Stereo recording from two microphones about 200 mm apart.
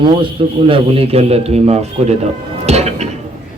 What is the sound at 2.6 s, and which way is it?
Music, 35° right (ahead or behind).